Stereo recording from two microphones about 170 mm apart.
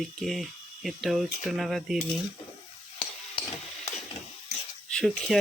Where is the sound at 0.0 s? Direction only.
Centre (ahead or behind).